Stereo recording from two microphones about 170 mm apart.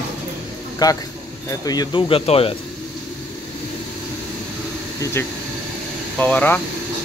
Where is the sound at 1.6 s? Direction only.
25° left (ahead or behind).